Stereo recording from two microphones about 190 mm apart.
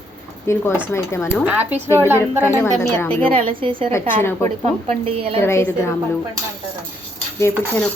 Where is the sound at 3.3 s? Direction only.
25° right (ahead or behind).